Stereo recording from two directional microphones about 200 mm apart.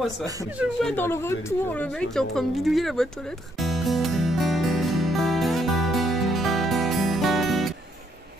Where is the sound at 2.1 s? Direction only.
Centre (ahead or behind).